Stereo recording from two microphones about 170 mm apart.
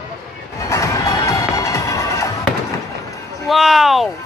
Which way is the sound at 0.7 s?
15° left (ahead or behind).